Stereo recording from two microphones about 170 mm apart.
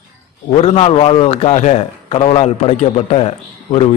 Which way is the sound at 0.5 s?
35° left (ahead or behind).